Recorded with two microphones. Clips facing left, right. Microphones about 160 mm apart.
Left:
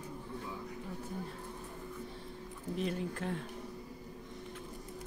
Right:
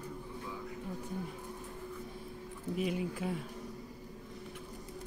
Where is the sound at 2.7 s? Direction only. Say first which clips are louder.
Right 1 dB; 10° right (ahead or behind).